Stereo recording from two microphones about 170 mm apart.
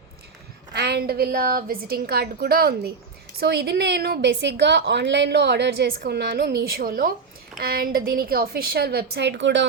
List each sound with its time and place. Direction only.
0.7 s a woman's voice: 75° right (ahead or behind)
3.4 s a woman's voice: 75° right (ahead or behind)